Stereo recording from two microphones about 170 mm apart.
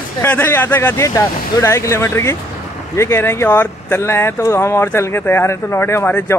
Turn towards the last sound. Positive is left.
turn(degrees=15)  # may be behind; listen again after turning